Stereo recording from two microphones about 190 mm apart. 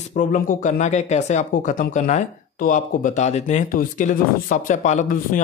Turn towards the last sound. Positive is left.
turn(degrees=40)  # may be behind; listen again after turning